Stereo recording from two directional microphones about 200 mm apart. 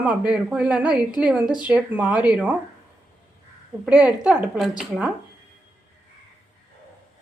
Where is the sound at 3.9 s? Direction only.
5° right (ahead or behind).